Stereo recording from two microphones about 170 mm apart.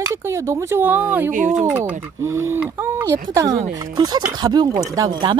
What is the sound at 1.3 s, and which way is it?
Speech, 50° right (ahead or behind).